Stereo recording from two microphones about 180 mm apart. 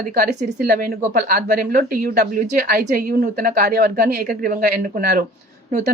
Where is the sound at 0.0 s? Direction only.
60° right (ahead or behind).